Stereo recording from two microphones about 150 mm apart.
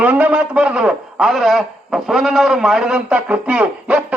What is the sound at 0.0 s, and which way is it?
A man's voice, 10° right (ahead or behind).